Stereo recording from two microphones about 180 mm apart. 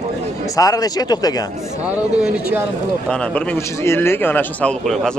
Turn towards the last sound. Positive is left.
turn(degrees=0)  # may be behind; listen again after turning